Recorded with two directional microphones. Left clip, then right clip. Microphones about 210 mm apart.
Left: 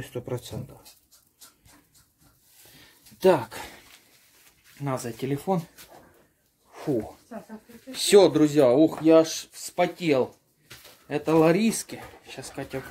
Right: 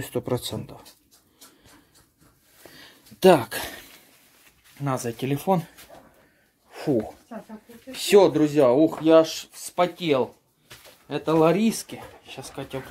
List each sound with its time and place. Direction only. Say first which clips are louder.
0.0 s speech: right 6 dB; 45° right (ahead or behind)
2.8 s a sound: right 4 dB; 35° right (ahead or behind)
4.7 s speech: right 3 dB; 35° right (ahead or behind)
6.7 s a sound: right 3 dB; 30° right (ahead or behind)
7.9 s speech: even; centre (ahead or behind); by 9.8 s 15° right (ahead or behind)
11.1 s speech: right 1 dB; centre (ahead or behind)